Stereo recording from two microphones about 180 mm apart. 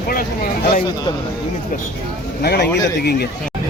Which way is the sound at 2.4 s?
65° left (ahead or behind).